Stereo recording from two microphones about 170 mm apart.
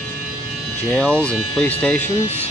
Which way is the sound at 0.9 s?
5° left (ahead or behind).